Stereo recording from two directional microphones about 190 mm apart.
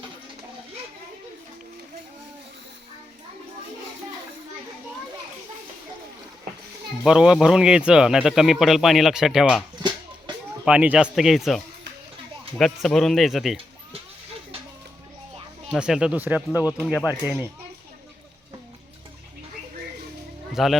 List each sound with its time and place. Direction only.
7.0 s a man's voice: 5° right (ahead or behind)
10.7 s a man's voice: 5° right (ahead or behind)
15.7 s a man's voice: 5° right (ahead or behind)
20.5 s speech: centre (ahead or behind)